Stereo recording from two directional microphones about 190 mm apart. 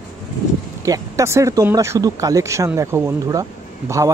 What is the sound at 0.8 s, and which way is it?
Speech, 15° right (ahead or behind).